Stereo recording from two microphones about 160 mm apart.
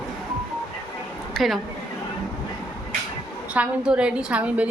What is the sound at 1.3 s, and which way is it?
Speech, centre (ahead or behind).